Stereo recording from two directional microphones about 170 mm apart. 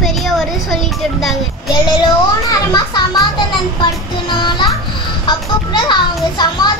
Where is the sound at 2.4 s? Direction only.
20° left (ahead or behind).